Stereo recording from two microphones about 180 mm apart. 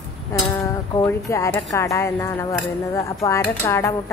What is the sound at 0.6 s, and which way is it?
Speech, 20° left (ahead or behind).